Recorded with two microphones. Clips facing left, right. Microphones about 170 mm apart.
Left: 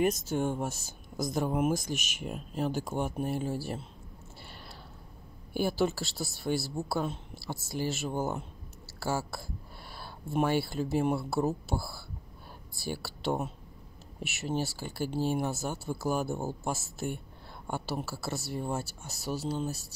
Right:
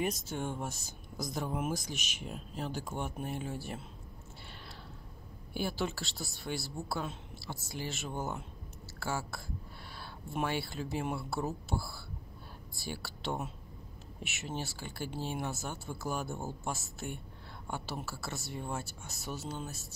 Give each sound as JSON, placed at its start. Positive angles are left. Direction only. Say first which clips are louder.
{"t": 0.0, "sound": "speech", "louder": "left 7 dB", "side_deg": 45}
{"t": 5.5, "sound": "speech", "louder": "left 6 dB", "side_deg": 45}
{"t": 9.9, "sound": "a sound", "louder": "left 7 dB", "side_deg": 40}
{"t": 10.8, "sound": "speech", "louder": "left 7 dB", "side_deg": 40}